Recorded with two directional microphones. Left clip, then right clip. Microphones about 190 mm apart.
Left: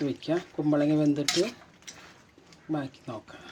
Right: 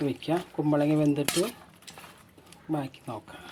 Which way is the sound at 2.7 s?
15° right (ahead or behind).